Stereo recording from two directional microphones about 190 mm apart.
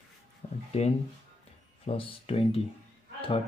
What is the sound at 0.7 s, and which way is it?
Speech, 35° left (ahead or behind).